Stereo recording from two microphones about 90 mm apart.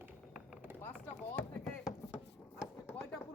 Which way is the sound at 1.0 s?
15° left (ahead or behind).